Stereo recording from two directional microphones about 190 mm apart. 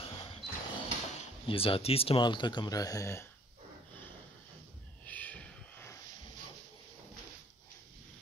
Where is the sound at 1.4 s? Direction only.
30° left (ahead or behind).